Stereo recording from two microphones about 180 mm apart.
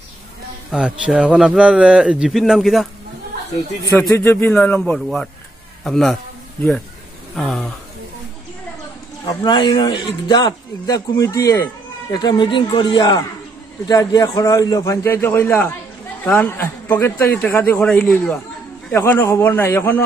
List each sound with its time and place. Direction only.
0.7 s a man's voice: 5° right (ahead or behind)
4.0 s a man's voice: 15° left (ahead or behind)
7.3 s a man's voice: centre (ahead or behind)
9.2 s a man's voice: 25° left (ahead or behind)